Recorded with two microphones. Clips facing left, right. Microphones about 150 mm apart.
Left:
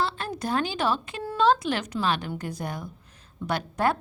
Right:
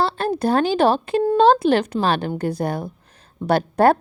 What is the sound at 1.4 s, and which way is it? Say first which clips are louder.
Speech: right 6 dB; 60° right (ahead or behind).